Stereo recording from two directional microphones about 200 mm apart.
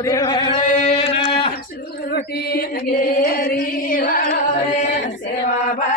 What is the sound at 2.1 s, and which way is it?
Mantra, 50° left (ahead or behind).